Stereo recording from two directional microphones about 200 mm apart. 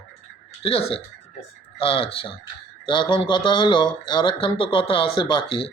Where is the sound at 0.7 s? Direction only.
30° left (ahead or behind).